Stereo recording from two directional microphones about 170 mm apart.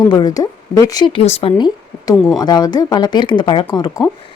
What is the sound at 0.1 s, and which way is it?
Speech, 25° left (ahead or behind).